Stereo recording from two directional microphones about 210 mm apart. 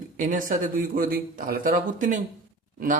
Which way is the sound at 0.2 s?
40° right (ahead or behind).